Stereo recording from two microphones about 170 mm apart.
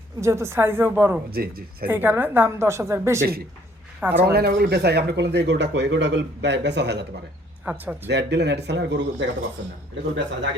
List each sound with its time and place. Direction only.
0.2 s a woman's voice: 15° right (ahead or behind)
1.3 s speech: 60° right (ahead or behind)
1.9 s a woman's voice: 10° right (ahead or behind)
4.3 s speech: 70° right (ahead or behind); by 7.0 s 85° right
7.6 s a woman's voice: 5° right (ahead or behind)
8.0 s speech: 90° right